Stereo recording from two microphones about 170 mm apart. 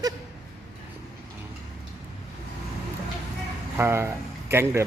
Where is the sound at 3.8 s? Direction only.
15° right (ahead or behind).